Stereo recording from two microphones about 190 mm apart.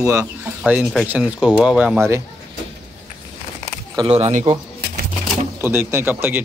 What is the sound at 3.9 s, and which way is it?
Speech, 30° right (ahead or behind).